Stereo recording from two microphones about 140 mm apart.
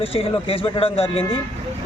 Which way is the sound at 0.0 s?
40° left (ahead or behind).